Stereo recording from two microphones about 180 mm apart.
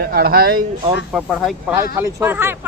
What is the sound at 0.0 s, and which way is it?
Speech, 55° right (ahead or behind).